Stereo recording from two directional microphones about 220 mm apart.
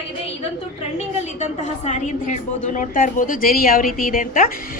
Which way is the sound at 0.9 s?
30° left (ahead or behind).